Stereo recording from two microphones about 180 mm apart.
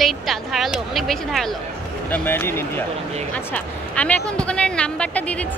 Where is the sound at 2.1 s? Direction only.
10° left (ahead or behind).